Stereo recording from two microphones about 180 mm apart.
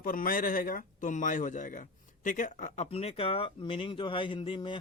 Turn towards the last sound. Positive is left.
turn(degrees=25)  # may be behind; listen again after turning